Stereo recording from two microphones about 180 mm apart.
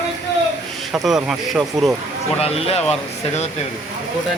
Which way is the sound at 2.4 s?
35° left (ahead or behind).